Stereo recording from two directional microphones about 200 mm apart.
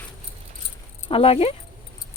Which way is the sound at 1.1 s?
30° left (ahead or behind).